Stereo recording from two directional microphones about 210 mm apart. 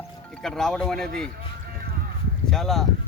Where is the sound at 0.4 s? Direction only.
5° left (ahead or behind).